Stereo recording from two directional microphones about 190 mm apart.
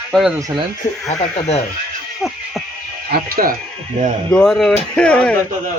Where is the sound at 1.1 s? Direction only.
35° left (ahead or behind).